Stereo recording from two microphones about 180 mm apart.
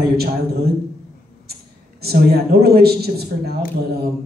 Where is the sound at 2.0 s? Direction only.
60° right (ahead or behind).